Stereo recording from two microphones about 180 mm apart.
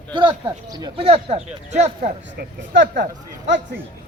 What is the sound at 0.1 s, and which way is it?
Speech, 25° right (ahead or behind).